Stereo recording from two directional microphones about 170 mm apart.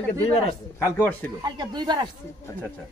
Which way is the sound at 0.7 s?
15° left (ahead or behind).